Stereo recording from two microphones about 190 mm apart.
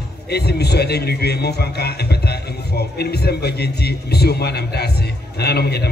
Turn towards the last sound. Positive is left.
turn(degrees=55)  # may be behind; listen again after turning